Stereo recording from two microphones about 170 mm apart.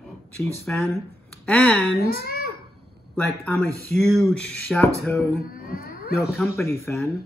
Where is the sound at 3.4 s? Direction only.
15° left (ahead or behind).